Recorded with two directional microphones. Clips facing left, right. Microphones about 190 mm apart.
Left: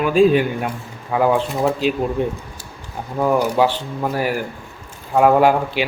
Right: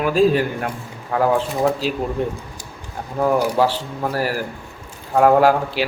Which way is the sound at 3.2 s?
5° right (ahead or behind).